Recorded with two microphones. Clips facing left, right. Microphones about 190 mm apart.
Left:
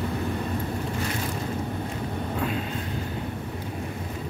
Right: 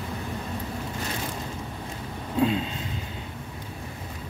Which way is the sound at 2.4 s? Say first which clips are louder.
Right 8 dB; 25° right (ahead or behind).